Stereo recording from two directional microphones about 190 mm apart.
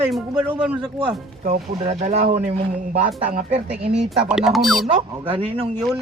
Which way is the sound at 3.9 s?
5° right (ahead or behind).